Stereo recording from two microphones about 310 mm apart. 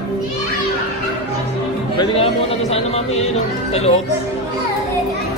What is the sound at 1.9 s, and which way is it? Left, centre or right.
A man's voice, centre.